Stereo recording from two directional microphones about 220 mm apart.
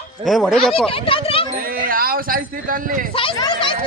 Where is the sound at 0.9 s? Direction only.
25° left (ahead or behind).